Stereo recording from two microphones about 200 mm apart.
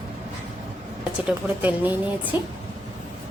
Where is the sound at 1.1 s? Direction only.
5° right (ahead or behind).